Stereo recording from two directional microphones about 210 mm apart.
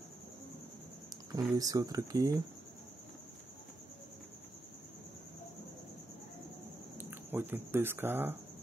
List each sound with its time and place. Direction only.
1.3 s speech: 15° right (ahead or behind)
7.0 s speech: 10° right (ahead or behind)